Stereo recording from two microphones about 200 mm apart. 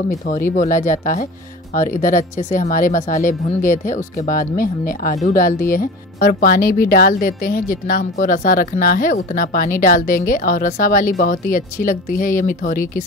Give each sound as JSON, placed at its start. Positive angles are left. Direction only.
{"t": 0.3, "sound": "speech", "side_deg": 40}